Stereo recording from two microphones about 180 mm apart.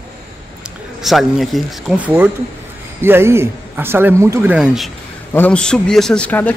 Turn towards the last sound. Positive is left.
turn(degrees=10)  # may be behind; listen again after turning